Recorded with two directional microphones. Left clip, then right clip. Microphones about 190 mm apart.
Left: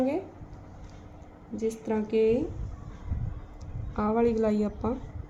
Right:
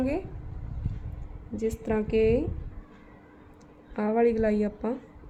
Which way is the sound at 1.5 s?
40° right (ahead or behind).